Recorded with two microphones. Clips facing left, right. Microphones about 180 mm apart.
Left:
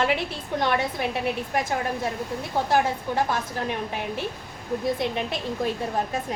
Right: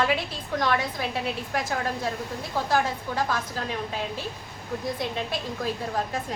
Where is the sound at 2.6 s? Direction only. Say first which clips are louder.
Left 2 dB; 20° left (ahead or behind).